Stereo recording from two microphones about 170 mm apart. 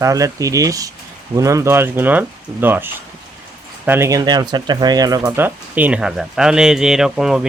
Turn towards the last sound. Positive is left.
turn(degrees=-5)  # may be behind; listen again after turning